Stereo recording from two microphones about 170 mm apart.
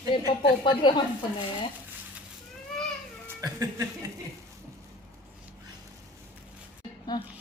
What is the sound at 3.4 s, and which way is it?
Chuckle, 20° right (ahead or behind).